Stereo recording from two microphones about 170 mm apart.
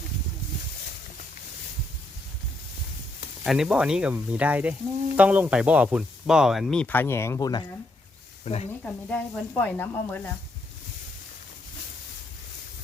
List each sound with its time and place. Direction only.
3.4 s speech: 5° right (ahead or behind); by 7.7 s 25° left (ahead or behind)
8.4 s speech: 40° left (ahead or behind)
8.8 s speech: 5° left (ahead or behind)